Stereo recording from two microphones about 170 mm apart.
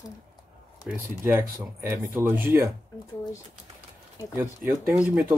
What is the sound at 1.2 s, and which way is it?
Speech, 15° right (ahead or behind).